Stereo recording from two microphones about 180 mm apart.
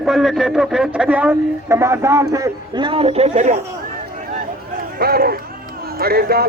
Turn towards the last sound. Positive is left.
turn(degrees=-60)  # may be behind; listen again after turning